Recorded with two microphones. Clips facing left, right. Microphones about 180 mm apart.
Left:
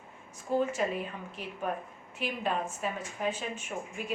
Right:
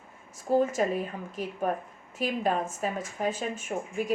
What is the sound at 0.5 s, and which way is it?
A woman's voice, 45° right (ahead or behind).